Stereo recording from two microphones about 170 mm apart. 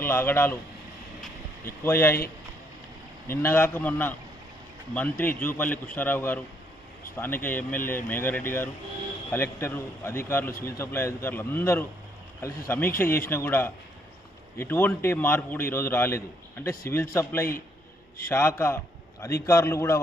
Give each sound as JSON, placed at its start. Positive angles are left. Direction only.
{"t": 0.0, "sound": "a man's voice", "side_deg": 15}
{"t": 1.8, "sound": "a man's voice", "side_deg": 15}
{"t": 3.2, "sound": "a man's voice", "side_deg": 15}